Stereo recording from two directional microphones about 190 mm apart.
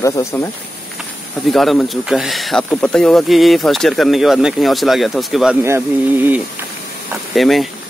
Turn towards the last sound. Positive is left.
turn(degrees=0)  # may be behind; listen again after turning